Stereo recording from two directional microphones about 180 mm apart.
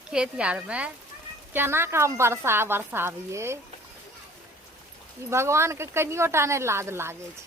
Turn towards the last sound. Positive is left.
turn(degrees=-15)  # may be behind; listen again after turning